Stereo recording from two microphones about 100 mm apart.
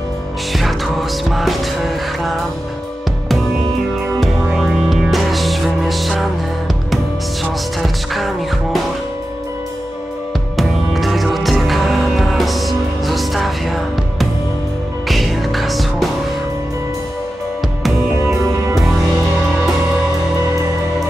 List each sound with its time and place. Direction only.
0.5 s music: centre (ahead or behind)
4.2 s music: centre (ahead or behind)
7.8 s music: centre (ahead or behind)
10.5 s music: centre (ahead or behind)
18.1 s music: 25° right (ahead or behind)